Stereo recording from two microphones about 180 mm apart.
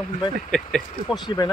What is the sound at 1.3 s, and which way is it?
Speech, 25° left (ahead or behind).